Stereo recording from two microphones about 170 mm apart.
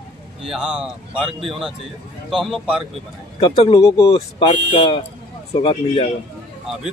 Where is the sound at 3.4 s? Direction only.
35° left (ahead or behind).